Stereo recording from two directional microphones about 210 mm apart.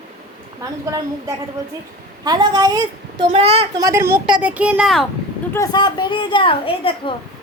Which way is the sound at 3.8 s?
15° right (ahead or behind).